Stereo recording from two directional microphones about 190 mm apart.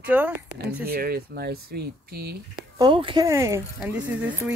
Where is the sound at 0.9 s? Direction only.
55° right (ahead or behind).